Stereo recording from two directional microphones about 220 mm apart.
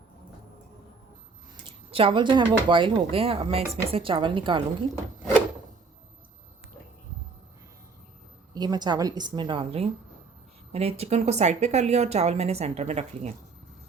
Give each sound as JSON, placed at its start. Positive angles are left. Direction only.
{"t": 1.9, "sound": "a woman's voice", "side_deg": -25}
{"t": 8.5, "sound": "a woman's voice", "side_deg": -20}